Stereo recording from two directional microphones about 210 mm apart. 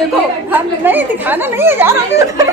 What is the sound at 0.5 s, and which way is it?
Speech, 10° right (ahead or behind).